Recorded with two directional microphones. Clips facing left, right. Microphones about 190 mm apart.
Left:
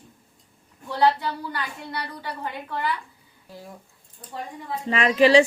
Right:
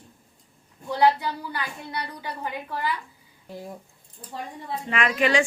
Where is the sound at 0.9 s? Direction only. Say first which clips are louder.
Even; 15° right (ahead or behind).